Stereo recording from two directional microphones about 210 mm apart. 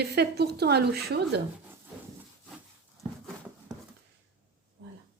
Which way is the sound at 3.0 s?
Centre (ahead or behind).